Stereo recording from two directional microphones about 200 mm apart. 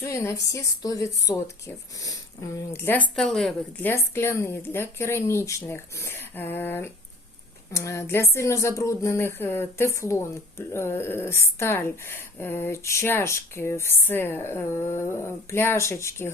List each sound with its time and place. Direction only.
0.0 s speech: 15° left (ahead or behind)
3.9 s speech: 10° left (ahead or behind)